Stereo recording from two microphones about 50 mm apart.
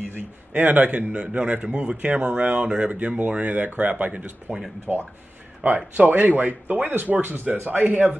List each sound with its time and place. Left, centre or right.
0.5 s speech: right
1.1 s speech: right
5.6 s speech: right